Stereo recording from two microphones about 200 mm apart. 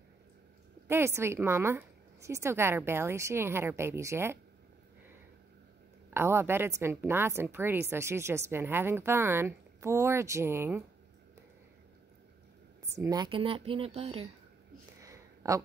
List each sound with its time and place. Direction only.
0.8 s a woman's voice: 10° right (ahead or behind)
6.0 s a woman's voice: 10° right (ahead or behind)
13.0 s speech: 20° right (ahead or behind)
15.0 s a sound: 15° right (ahead or behind)